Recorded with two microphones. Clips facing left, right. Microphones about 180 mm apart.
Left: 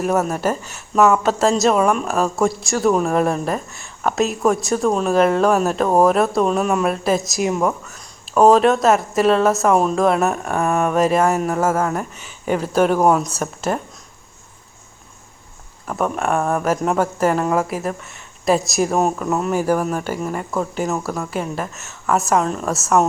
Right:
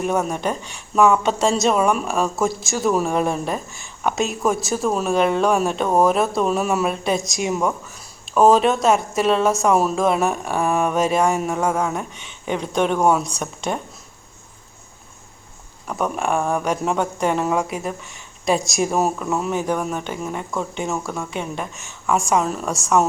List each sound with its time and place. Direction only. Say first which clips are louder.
0.0 s a woman's voice: left 2 dB; centre (ahead or behind)
15.9 s a woman's voice: left 2 dB; centre (ahead or behind)